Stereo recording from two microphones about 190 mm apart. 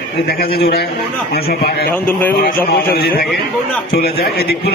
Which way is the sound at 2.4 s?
60° left (ahead or behind).